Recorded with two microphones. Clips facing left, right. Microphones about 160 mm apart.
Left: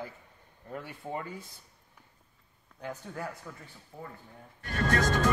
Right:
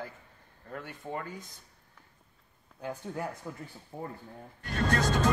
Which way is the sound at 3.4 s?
30° right (ahead or behind).